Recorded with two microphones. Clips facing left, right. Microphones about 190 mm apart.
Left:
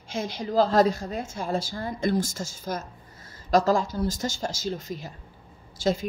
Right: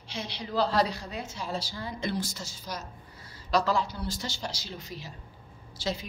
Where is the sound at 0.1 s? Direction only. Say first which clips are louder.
Left 6 dB; 45° left (ahead or behind).